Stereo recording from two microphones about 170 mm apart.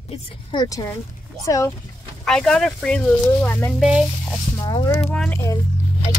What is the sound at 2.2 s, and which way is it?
Speech, 5° left (ahead or behind).